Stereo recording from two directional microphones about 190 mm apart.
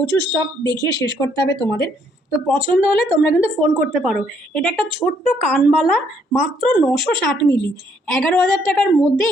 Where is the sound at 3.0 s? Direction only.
30° right (ahead or behind).